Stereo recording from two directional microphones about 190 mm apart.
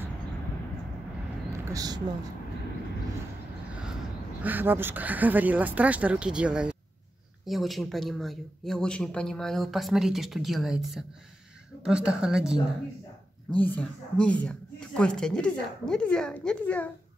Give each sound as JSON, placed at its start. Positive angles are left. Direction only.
{"t": 1.7, "sound": "speech", "side_deg": -20}
{"t": 4.4, "sound": "speech", "side_deg": -10}
{"t": 13.6, "sound": "speech", "side_deg": 10}